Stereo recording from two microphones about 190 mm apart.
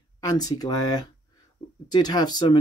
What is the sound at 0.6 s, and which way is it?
Speech, 20° left (ahead or behind).